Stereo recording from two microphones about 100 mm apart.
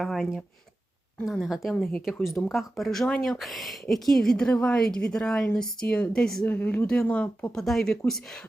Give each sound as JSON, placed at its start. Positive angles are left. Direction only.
{"t": 0.0, "sound": "speech", "side_deg": 0}
{"t": 6.4, "sound": "speech", "side_deg": 15}